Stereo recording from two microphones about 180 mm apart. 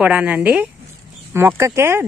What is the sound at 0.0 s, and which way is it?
Speech, 10° right (ahead or behind).